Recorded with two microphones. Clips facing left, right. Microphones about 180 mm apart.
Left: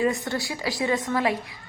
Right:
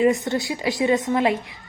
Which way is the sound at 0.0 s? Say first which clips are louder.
Right 5 dB; 20° right (ahead or behind).